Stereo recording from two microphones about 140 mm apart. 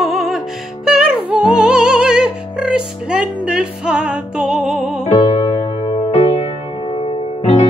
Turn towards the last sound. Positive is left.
turn(degrees=50)  # may be behind; listen again after turning